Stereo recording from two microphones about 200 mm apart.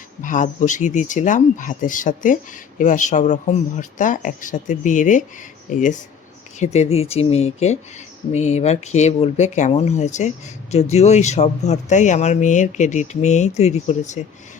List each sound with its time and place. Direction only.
0.2 s speech: 40° left (ahead or behind)